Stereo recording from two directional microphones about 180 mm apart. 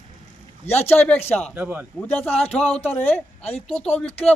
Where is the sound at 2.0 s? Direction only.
10° left (ahead or behind).